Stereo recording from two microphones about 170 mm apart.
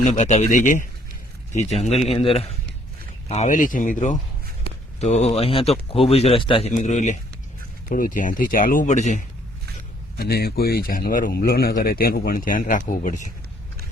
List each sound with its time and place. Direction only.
0.0 s a man's voice: 40° left (ahead or behind)
6.7 s speech: 45° left (ahead or behind)
7.9 s speech: 55° left (ahead or behind)
10.2 s speech: 65° left (ahead or behind)